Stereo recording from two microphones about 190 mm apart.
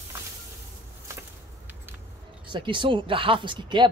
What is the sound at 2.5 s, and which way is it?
Speech, 25° right (ahead or behind).